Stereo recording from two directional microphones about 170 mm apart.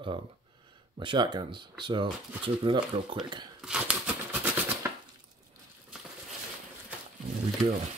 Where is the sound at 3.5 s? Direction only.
5° right (ahead or behind).